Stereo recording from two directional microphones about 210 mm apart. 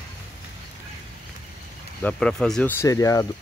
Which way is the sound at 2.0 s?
5° left (ahead or behind).